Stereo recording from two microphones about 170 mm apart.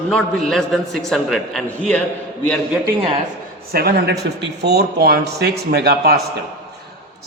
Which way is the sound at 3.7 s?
65° right (ahead or behind).